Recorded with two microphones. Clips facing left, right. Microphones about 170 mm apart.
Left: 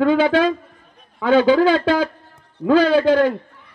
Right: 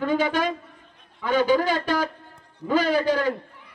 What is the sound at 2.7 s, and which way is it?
Speech, 70° left (ahead or behind).